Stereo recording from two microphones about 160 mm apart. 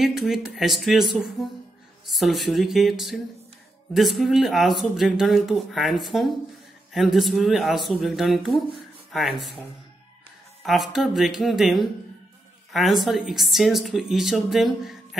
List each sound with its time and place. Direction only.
0.0 s speech: centre (ahead or behind)
10.6 s speech: centre (ahead or behind)